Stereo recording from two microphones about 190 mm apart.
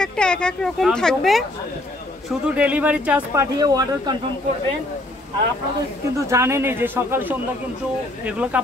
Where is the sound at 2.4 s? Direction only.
5° right (ahead or behind).